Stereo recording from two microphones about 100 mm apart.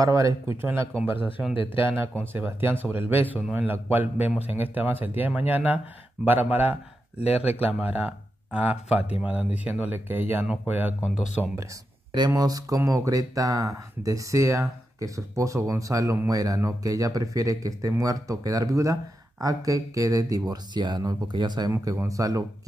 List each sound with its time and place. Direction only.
0.0 s speech: 30° right (ahead or behind)
1.5 s speech: 60° left (ahead or behind)
2.3 s speech: 20° right (ahead or behind)
7.2 s speech: 90° left
7.8 s speech: 15° right (ahead or behind)
12.1 s speech: 40° right (ahead or behind)
21.9 s speech: 35° right (ahead or behind)